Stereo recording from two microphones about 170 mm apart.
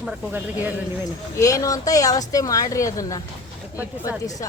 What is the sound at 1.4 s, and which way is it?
Speech, 20° left (ahead or behind).